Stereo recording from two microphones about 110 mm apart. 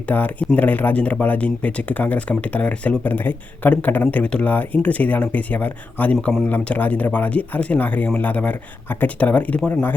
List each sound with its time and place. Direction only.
0.1 s speech: 15° left (ahead or behind)